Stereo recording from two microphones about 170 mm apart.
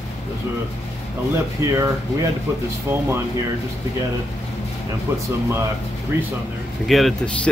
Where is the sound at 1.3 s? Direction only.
20° right (ahead or behind).